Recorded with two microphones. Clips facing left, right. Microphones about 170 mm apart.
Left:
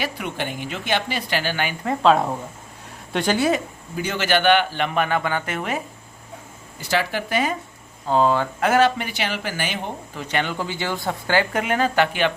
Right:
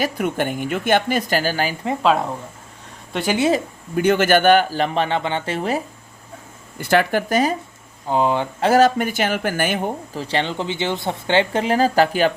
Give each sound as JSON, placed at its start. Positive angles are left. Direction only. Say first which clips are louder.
{"t": 0.0, "sound": "speech", "louder": "right 6 dB", "side_deg": -45}
{"t": 2.0, "sound": "speech", "louder": "left 2 dB", "side_deg": 0}
{"t": 3.9, "sound": "a man's voice", "louder": "right 7 dB", "side_deg": -55}
{"t": 6.7, "sound": "speech", "louder": "right 6 dB", "side_deg": -55}
{"t": 8.0, "sound": "speech", "louder": "even", "side_deg": -15}
{"t": 8.6, "sound": "speech", "louder": "right 4 dB", "side_deg": -40}
{"t": 10.2, "sound": "speech", "louder": "right 1 dB", "side_deg": -30}